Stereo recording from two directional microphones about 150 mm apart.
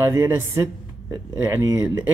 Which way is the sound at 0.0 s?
15° right (ahead or behind).